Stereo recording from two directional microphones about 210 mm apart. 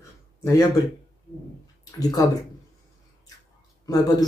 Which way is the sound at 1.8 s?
15° left (ahead or behind).